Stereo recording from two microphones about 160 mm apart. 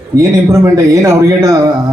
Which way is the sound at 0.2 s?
20° right (ahead or behind).